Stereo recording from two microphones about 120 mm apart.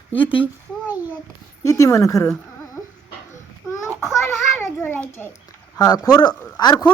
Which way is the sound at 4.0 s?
25° left (ahead or behind).